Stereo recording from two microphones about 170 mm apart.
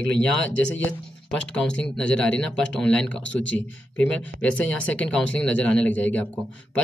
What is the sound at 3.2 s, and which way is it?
Speech, 90° left.